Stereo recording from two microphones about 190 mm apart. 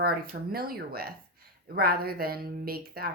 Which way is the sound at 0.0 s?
55° right (ahead or behind).